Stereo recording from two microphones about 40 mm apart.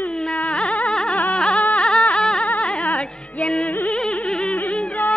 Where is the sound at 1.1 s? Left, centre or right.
Left.